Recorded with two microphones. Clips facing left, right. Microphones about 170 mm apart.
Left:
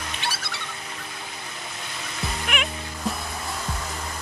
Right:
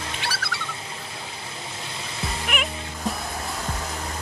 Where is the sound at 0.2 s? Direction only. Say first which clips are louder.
Even; 25° left (ahead or behind).